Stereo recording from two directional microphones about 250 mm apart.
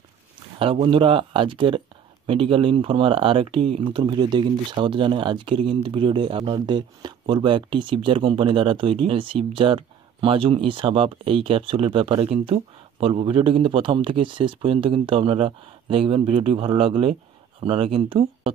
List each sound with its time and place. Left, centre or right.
0.6 s speech: right